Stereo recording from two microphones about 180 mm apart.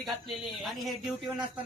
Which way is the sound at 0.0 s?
Centre (ahead or behind).